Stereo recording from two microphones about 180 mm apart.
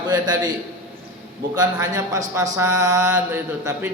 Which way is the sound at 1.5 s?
20° right (ahead or behind).